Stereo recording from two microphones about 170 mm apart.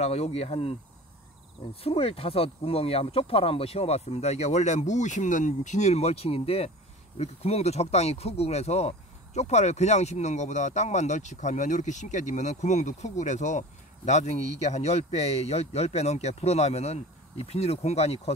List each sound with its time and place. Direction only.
0.0 s speech: 40° left (ahead or behind)
1.8 s speech: 35° left (ahead or behind)